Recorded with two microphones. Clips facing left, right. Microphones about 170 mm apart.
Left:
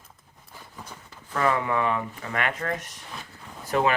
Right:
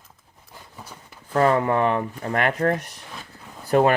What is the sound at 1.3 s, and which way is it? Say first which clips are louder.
Speech: right 5 dB; 40° right (ahead or behind).